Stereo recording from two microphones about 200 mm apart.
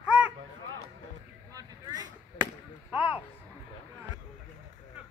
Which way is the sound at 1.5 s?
20° right (ahead or behind).